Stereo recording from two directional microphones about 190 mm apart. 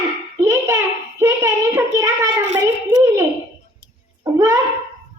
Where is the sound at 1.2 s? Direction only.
15° right (ahead or behind).